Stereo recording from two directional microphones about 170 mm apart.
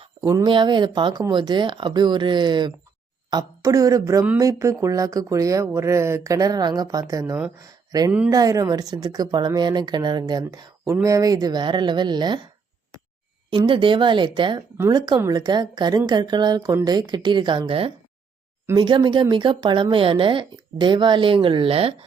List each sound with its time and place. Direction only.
0.2 s a woman's voice: 15° right (ahead or behind)
13.7 s a woman's voice: 30° right (ahead or behind)